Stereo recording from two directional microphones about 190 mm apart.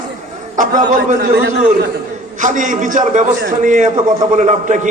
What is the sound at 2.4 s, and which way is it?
A man's voice, 40° right (ahead or behind).